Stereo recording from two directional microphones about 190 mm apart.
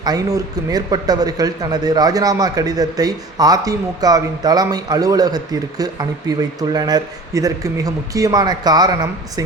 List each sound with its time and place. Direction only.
0.0 s a man's voice: 20° right (ahead or behind)